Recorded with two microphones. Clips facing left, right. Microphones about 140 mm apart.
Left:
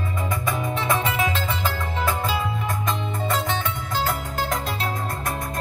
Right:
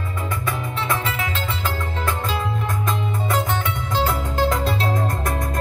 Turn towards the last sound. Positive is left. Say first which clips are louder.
# right 5 dB
turn(degrees=-35)  # may be behind; listen again after turning